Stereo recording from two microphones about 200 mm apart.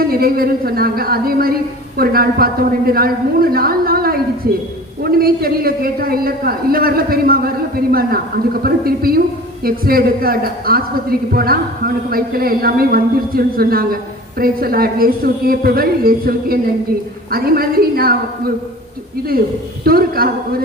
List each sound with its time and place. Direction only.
0.1 s a man's voice: 50° right (ahead or behind)
19.8 s a man's voice: 50° right (ahead or behind)